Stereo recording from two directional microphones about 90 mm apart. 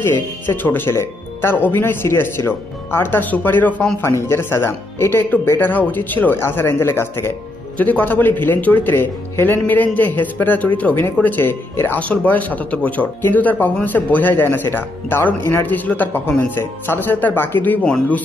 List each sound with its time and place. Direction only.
0.0 s speech: 25° left (ahead or behind)
4.0 s speech: 30° left (ahead or behind)
7.7 s speech: 15° left (ahead or behind)
17.8 s speech: 10° left (ahead or behind)